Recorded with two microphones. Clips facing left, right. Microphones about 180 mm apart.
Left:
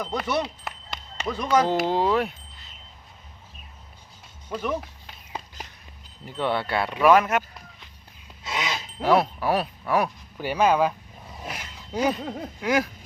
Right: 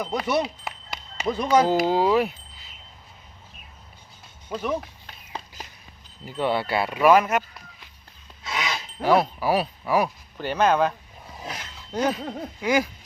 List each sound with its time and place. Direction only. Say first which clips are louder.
0.0 s speech: right 1 dB; centre (ahead or behind)
0.6 s a sound: right 1 dB; centre (ahead or behind)
1.4 s speech: right 2 dB; 10° right (ahead or behind)
4.4 s speech: right 1 dB; centre (ahead or behind)
6.2 s speech: right 2 dB; 5° right (ahead or behind)
8.5 s a sound: even; 20° left (ahead or behind)
9.0 s speech: even; centre (ahead or behind)
10.3 s speech: even; 10° left (ahead or behind)